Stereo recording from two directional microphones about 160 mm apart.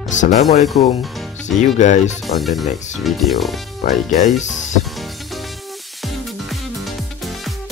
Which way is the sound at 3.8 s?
55° left (ahead or behind).